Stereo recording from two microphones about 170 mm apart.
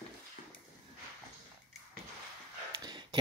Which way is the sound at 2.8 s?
25° right (ahead or behind).